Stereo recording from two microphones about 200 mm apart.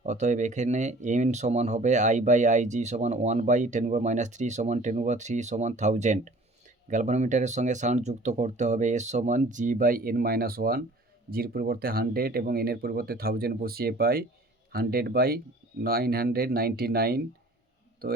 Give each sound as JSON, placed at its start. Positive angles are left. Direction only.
{"t": 0.0, "sound": "speech", "side_deg": -35}